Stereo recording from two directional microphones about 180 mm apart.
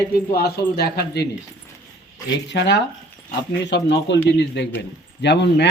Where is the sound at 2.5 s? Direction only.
75° left (ahead or behind).